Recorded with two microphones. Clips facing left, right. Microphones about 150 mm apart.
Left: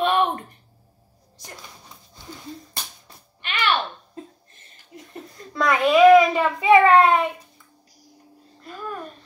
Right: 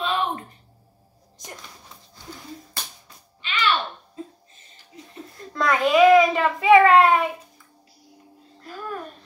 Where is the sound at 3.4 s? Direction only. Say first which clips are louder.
Even; 55° left (ahead or behind).